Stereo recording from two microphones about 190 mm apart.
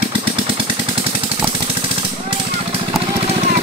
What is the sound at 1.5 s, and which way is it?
Jackhammer, 30° right (ahead or behind).